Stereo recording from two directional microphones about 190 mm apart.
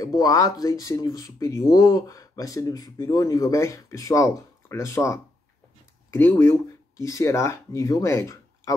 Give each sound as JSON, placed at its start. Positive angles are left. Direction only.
{"t": 0.0, "sound": "speech", "side_deg": 20}